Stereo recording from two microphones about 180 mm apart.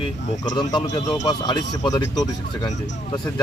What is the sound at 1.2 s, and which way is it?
Speech, 20° left (ahead or behind).